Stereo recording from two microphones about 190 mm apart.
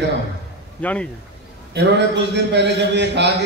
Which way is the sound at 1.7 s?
65° right (ahead or behind).